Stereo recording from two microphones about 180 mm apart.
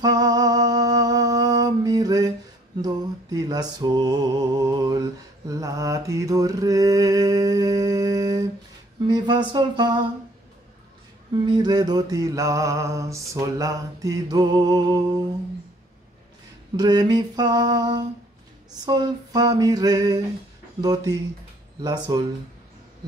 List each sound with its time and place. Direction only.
0.0 s music: 20° right (ahead or behind)
5.5 s mantra: 20° right (ahead or behind)
9.0 s a sound: 25° right (ahead or behind)
11.4 s mantra: 25° right (ahead or behind)
16.7 s mantra: 25° right (ahead or behind)